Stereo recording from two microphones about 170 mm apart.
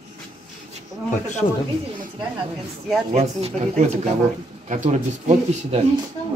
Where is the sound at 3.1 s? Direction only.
40° right (ahead or behind).